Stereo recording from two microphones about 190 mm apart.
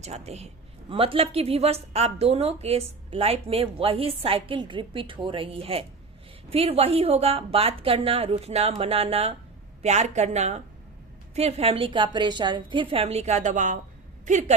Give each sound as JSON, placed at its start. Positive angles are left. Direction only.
{"t": 0.0, "sound": "a woman's voice", "side_deg": -35}